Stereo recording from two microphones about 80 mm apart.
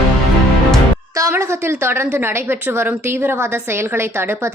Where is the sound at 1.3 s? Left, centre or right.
Right.